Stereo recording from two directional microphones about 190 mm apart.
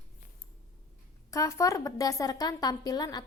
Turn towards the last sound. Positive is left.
turn(degrees=20)  # may be behind; listen again after turning